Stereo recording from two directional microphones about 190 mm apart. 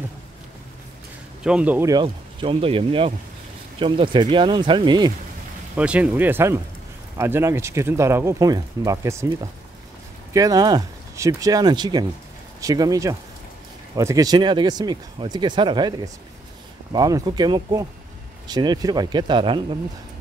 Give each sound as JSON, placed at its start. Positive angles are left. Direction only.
{"t": 1.4, "sound": "speech", "side_deg": -5}
{"t": 1.9, "sound": "speech", "side_deg": -25}
{"t": 5.8, "sound": "speech", "side_deg": -5}